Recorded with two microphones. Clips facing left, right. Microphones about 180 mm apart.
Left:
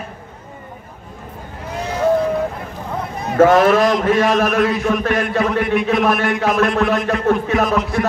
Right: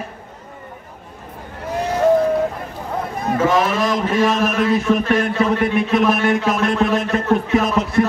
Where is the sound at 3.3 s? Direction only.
55° left (ahead or behind).